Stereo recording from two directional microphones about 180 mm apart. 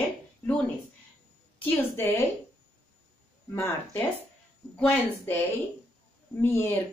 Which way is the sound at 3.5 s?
15° left (ahead or behind).